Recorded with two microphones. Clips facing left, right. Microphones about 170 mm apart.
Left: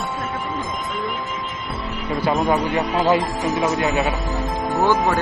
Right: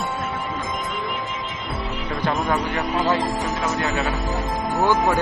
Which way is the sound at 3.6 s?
20° left (ahead or behind).